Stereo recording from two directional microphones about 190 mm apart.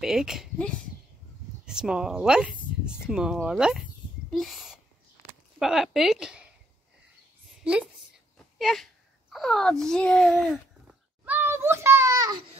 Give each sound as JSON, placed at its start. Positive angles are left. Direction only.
{"t": 0.0, "sound": "speech", "side_deg": -5}
{"t": 7.6, "sound": "speech", "side_deg": -5}
{"t": 9.3, "sound": "a sound", "side_deg": 0}